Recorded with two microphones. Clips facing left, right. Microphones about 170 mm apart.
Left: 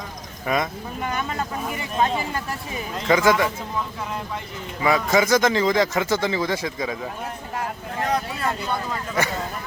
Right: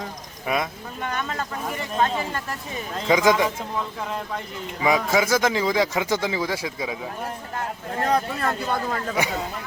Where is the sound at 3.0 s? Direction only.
15° right (ahead or behind).